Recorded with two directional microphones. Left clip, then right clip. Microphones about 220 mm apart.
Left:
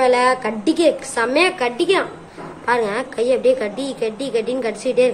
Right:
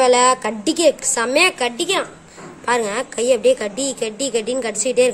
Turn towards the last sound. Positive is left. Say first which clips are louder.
# even
turn(degrees=-45)  # may be behind; listen again after turning